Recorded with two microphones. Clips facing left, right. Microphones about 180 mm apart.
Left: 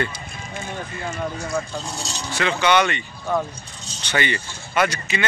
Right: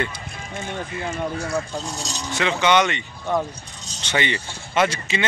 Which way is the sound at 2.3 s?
20° right (ahead or behind).